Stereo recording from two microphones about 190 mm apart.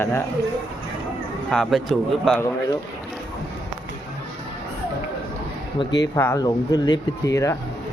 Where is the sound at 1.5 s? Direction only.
Centre (ahead or behind).